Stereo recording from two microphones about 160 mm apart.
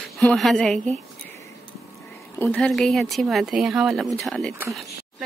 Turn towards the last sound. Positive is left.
turn(degrees=5)  # may be behind; listen again after turning